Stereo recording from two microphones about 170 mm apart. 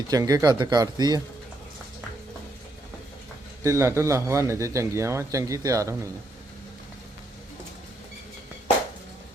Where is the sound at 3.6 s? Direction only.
15° right (ahead or behind).